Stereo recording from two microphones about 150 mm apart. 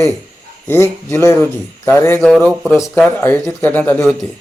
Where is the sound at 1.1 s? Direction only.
15° left (ahead or behind).